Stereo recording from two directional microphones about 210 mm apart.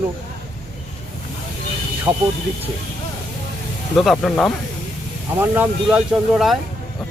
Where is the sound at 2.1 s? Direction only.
10° right (ahead or behind).